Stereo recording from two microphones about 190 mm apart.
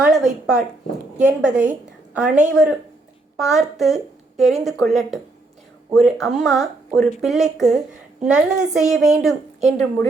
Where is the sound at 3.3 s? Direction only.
Centre (ahead or behind).